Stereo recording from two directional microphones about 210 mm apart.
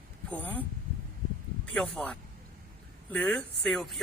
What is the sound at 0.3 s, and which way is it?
Speech, 10° left (ahead or behind).